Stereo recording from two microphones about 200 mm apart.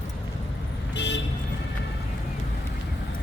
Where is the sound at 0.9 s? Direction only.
60° left (ahead or behind).